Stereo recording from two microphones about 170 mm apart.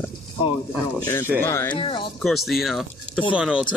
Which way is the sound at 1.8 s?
30° left (ahead or behind).